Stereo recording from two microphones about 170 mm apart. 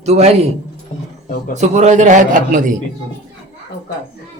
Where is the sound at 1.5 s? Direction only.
45° right (ahead or behind).